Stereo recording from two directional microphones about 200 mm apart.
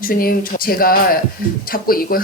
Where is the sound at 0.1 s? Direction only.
45° left (ahead or behind).